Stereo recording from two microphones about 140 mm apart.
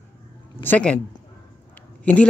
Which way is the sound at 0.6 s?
10° left (ahead or behind).